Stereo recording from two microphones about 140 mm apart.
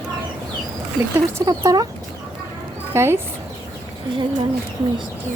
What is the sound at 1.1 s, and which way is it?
Speech, 25° right (ahead or behind).